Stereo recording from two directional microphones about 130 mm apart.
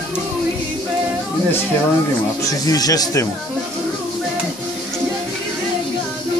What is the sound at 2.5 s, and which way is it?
Speech, 30° left (ahead or behind).